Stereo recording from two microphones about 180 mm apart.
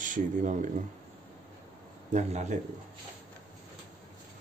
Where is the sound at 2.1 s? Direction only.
40° right (ahead or behind).